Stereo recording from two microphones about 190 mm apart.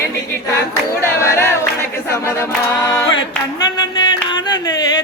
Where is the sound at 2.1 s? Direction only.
15° left (ahead or behind).